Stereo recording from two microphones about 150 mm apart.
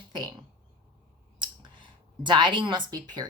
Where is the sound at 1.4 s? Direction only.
30° right (ahead or behind).